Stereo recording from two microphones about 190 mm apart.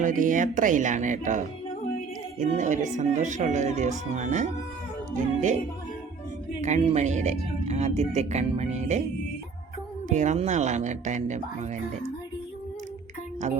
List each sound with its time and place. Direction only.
0.0 s speech: 45° right (ahead or behind)
6.6 s speech: 35° right (ahead or behind)
10.1 s speech: 40° right (ahead or behind)